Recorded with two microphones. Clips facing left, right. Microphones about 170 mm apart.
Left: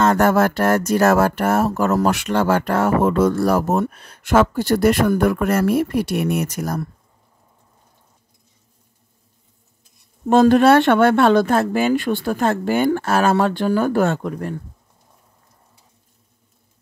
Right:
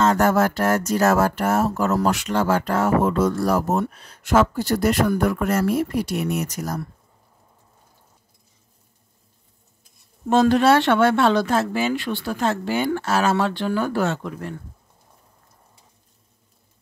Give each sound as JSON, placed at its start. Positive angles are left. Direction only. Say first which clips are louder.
{"t": 0.0, "sound": "speech", "louder": "left 2 dB", "side_deg": 60}
{"t": 10.3, "sound": "speech", "louder": "left 4 dB", "side_deg": 50}